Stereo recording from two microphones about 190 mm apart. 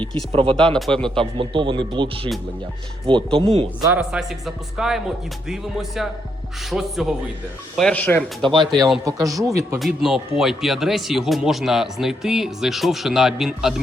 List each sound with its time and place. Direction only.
0.3 s speech: 30° right (ahead or behind)
0.5 s speech: 5° left (ahead or behind)
1.2 s speech: 25° right (ahead or behind)
3.3 s speech: 30° right (ahead or behind)
3.8 s speech: 5° right (ahead or behind)
9.0 s a man's voice: 15° right (ahead or behind)
9.7 s speech: centre (ahead or behind)